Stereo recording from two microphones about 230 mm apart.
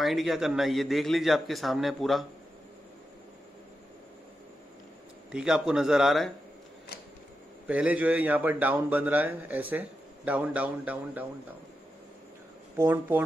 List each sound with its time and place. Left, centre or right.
0.0 s a man's voice: centre
5.3 s a man's voice: centre
7.6 s a man's voice: centre
12.7 s a man's voice: centre